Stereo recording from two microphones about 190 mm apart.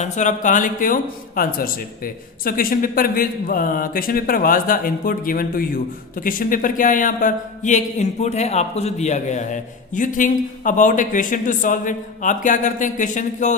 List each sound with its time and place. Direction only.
0.0 s speech: 40° left (ahead or behind)